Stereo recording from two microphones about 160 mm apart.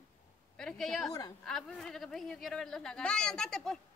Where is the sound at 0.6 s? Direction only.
5° left (ahead or behind).